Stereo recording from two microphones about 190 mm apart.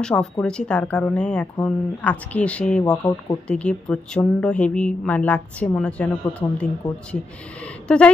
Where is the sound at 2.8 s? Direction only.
20° left (ahead or behind).